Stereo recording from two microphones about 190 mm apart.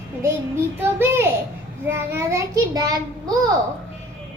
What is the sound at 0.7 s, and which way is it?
A child's voice, 10° right (ahead or behind).